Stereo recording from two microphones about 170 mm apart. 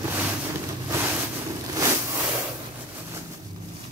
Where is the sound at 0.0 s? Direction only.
10° right (ahead or behind).